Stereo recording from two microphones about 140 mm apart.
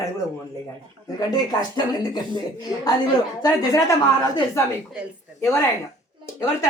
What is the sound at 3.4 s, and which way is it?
Speech, 25° left (ahead or behind).